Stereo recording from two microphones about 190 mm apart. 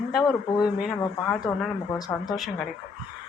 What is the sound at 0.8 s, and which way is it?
Speech, centre (ahead or behind).